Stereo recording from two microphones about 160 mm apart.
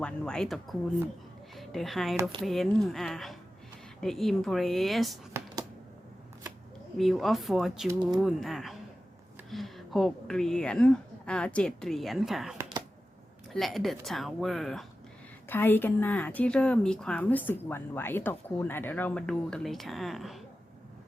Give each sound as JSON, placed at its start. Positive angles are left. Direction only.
{"t": 0.0, "sound": "a woman's voice", "side_deg": 5}
{"t": 5.3, "sound": "a sound", "side_deg": -15}
{"t": 6.9, "sound": "a woman's voice", "side_deg": 0}
{"t": 15.4, "sound": "a woman's voice", "side_deg": 15}